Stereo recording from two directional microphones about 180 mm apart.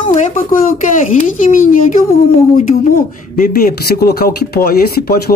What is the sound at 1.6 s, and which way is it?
Speech, 45° left (ahead or behind).